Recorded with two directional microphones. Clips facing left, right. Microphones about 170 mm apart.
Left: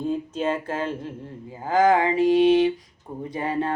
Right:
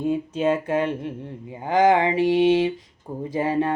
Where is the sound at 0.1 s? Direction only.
10° right (ahead or behind).